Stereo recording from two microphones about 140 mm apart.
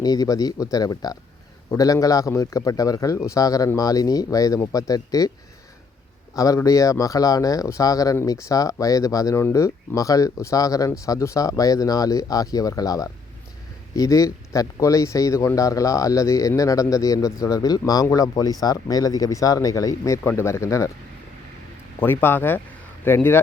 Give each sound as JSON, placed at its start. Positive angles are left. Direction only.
{"t": 0.0, "sound": "speech", "side_deg": 25}
{"t": 6.3, "sound": "speech", "side_deg": 25}
{"t": 22.0, "sound": "speech", "side_deg": 15}